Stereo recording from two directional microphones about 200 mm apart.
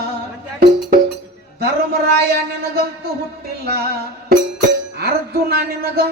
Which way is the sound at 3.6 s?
50° right (ahead or behind).